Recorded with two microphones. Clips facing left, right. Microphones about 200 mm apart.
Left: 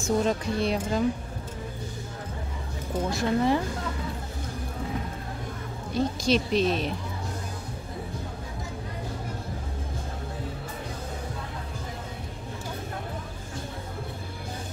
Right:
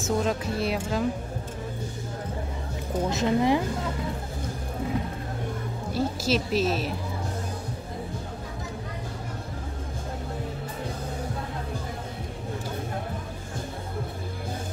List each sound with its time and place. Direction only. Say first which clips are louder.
0.0 s speech: left 1 dB; centre (ahead or behind)
3.1 s a woman's voice: right 1 dB; 20° right (ahead or behind)
5.9 s speech: left 2 dB; 5° right (ahead or behind)